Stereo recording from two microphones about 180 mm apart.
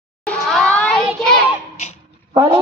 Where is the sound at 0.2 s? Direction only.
5° left (ahead or behind).